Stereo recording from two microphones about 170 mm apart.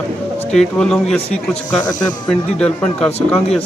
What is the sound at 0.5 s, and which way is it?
Speech, 5° left (ahead or behind).